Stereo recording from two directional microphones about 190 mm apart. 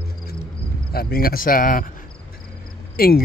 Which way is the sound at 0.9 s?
55° left (ahead or behind).